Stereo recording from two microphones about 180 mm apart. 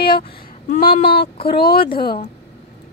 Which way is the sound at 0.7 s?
55° left (ahead or behind).